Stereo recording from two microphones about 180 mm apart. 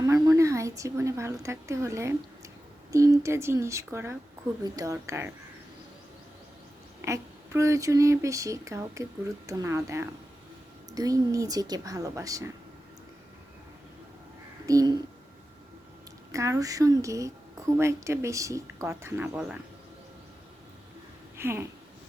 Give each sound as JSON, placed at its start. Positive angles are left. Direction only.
{"t": 0.0, "sound": "a sound", "side_deg": -20}
{"t": 0.8, "sound": "a woman's voice", "side_deg": -15}
{"t": 7.0, "sound": "a woman's voice", "side_deg": -15}
{"t": 14.7, "sound": "speech", "side_deg": -20}
{"t": 16.3, "sound": "a woman's voice", "side_deg": -20}
{"t": 21.3, "sound": "speech", "side_deg": -15}